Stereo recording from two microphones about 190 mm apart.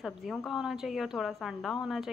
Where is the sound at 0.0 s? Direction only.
Centre (ahead or behind).